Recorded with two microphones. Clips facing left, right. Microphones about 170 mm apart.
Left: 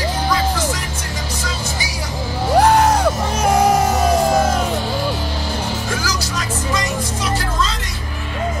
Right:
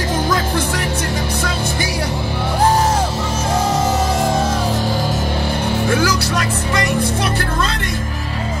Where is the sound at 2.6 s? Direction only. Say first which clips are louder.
Even; 70° left (ahead or behind).